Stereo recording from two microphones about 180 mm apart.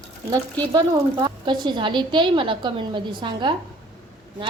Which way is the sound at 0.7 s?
25° right (ahead or behind).